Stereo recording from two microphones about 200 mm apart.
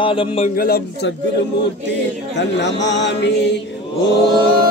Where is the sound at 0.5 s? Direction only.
50° left (ahead or behind).